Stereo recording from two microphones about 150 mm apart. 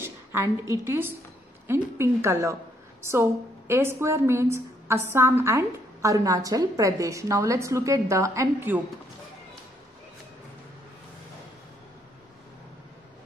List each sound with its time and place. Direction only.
0.0 s a woman's voice: 15° right (ahead or behind)